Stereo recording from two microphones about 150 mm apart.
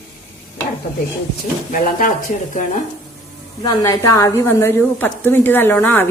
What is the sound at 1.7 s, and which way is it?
Speech, 65° left (ahead or behind).